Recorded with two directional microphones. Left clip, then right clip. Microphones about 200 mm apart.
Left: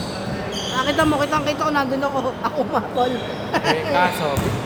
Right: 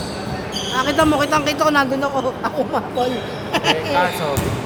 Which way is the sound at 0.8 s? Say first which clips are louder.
Right 2 dB; 20° right (ahead or behind).